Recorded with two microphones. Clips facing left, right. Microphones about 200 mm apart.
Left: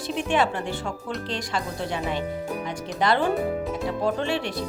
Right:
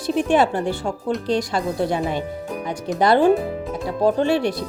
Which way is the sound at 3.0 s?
40° right (ahead or behind).